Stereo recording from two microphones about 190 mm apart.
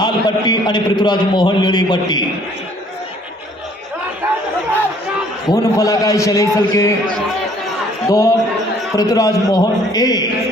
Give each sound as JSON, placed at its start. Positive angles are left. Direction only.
{"t": 0.0, "sound": "a man's voice", "side_deg": 20}
{"t": 5.5, "sound": "a man's voice", "side_deg": 20}
{"t": 8.0, "sound": "a man's voice", "side_deg": 15}